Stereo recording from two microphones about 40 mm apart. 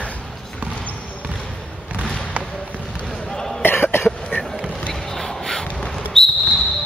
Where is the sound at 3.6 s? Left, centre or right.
Left.